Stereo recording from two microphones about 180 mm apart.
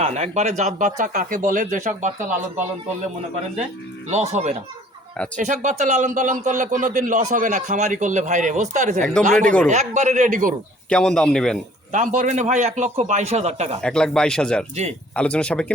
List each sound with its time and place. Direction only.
0.0 s a man's voice: 40° right (ahead or behind)
4.1 s a man's voice: 35° right (ahead or behind)
9.4 s speech: 5° left (ahead or behind)
9.6 s a man's voice: 40° right (ahead or behind)
10.8 s speech: 5° left (ahead or behind)
11.9 s a man's voice: 45° right (ahead or behind)
13.8 s speech: 5° left (ahead or behind)